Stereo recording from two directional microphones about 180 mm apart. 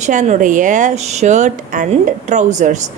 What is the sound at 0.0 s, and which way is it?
A woman's voice, 40° right (ahead or behind).